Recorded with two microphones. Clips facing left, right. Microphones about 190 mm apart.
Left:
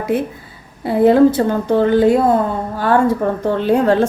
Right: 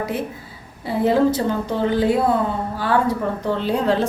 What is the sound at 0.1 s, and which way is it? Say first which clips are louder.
A woman's voice: left 7 dB; 50° left (ahead or behind).